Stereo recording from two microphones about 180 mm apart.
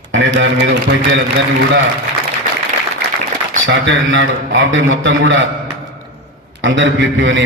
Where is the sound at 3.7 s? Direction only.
90° right.